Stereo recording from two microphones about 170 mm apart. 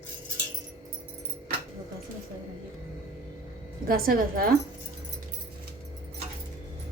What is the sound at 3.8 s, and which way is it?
Speech, 60° right (ahead or behind).